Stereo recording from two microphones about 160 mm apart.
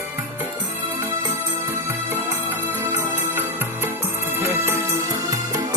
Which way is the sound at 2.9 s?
15° right (ahead or behind).